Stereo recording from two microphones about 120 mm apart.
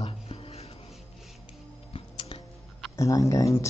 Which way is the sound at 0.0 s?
50° left (ahead or behind).